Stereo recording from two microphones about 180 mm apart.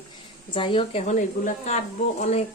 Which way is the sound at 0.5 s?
30° left (ahead or behind).